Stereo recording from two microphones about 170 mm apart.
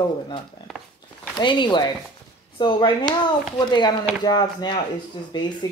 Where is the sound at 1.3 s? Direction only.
25° left (ahead or behind).